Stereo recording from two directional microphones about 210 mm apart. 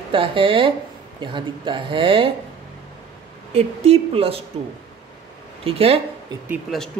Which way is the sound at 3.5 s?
30° right (ahead or behind).